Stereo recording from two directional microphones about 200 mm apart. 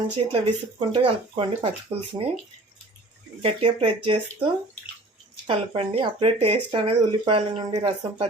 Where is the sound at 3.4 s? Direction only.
25° right (ahead or behind).